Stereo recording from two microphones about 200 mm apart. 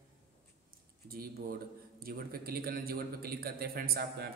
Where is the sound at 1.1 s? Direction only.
50° right (ahead or behind).